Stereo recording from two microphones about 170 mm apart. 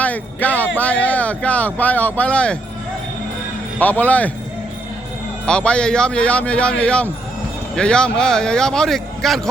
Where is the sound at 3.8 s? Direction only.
10° left (ahead or behind).